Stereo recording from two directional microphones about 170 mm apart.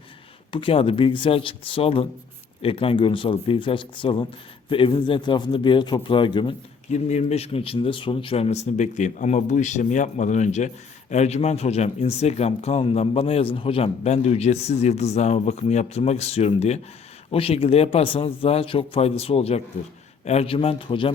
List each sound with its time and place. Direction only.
0.5 s a man's voice: 30° left (ahead or behind)
6.9 s speech: 40° left (ahead or behind)